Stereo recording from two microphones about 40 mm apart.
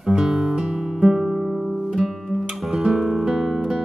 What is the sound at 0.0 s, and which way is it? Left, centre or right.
Music, centre.